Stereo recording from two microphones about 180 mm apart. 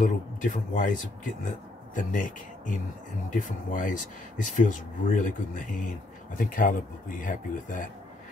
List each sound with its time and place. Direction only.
0.0 s speech: 45° left (ahead or behind)